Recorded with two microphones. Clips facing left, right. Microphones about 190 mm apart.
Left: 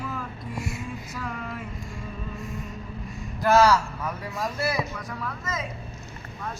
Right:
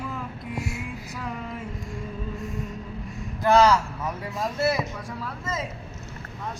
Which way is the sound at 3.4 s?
20° right (ahead or behind).